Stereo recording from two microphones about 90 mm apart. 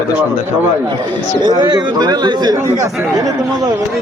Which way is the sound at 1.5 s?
50° right (ahead or behind).